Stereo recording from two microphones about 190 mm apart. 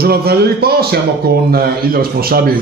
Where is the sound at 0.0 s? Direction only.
55° right (ahead or behind).